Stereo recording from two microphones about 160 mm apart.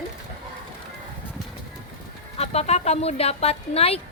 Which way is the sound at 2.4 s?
40° left (ahead or behind).